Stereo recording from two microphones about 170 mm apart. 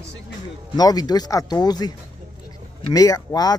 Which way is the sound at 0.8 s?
25° left (ahead or behind).